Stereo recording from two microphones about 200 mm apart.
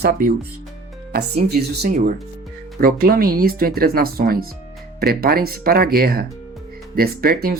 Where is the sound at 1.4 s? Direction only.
55° right (ahead or behind).